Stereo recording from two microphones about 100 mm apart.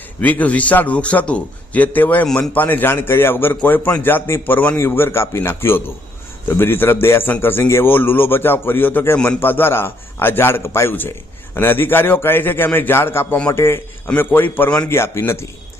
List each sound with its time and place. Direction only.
0.2 s a man's voice: 15° left (ahead or behind)